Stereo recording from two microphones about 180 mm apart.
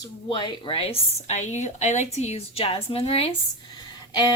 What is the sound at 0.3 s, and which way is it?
A woman's voice, 25° left (ahead or behind).